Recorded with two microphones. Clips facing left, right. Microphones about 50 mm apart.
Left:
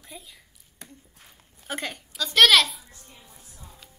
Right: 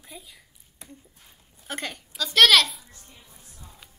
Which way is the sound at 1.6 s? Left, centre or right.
Centre.